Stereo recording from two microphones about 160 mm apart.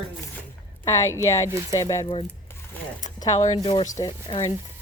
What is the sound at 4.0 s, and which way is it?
Speech, 30° left (ahead or behind).